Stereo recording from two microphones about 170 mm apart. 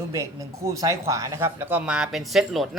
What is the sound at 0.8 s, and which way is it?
Speech, 20° right (ahead or behind).